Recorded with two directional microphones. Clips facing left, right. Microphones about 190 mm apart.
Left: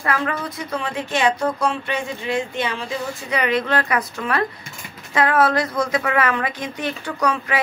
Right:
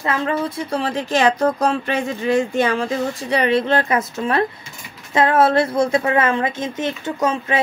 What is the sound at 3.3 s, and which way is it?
A woman's voice, 30° right (ahead or behind).